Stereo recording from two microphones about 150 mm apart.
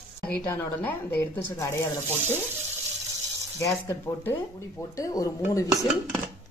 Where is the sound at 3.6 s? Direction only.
20° left (ahead or behind).